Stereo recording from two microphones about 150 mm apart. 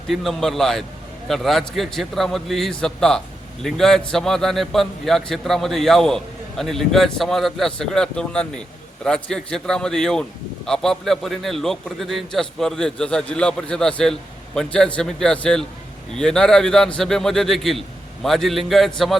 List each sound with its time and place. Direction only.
0.1 s a man's voice: centre (ahead or behind)